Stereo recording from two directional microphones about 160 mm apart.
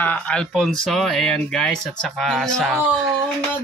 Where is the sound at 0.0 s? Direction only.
10° left (ahead or behind).